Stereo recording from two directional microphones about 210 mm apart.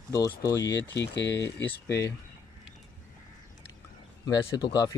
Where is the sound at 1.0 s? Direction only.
55° left (ahead or behind).